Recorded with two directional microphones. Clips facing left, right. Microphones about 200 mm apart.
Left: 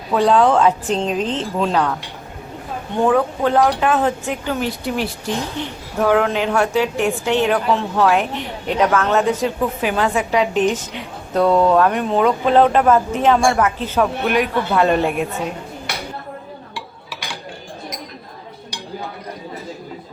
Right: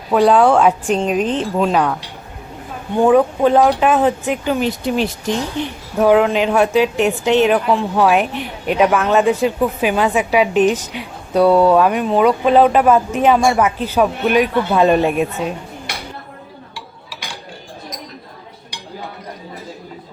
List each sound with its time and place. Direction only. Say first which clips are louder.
0.1 s a woman's voice: right 3 dB; 10° right (ahead or behind)
3.1 s a woman's voice: right 5 dB; 20° right (ahead or behind)